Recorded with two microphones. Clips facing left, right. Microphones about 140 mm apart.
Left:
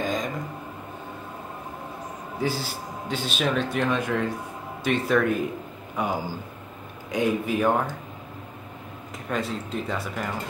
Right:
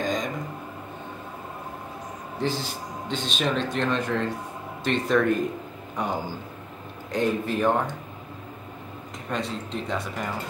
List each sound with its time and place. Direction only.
0.0 s a sound: 5° left (ahead or behind)
2.3 s a man's voice: 10° left (ahead or behind)
9.3 s speech: 5° left (ahead or behind)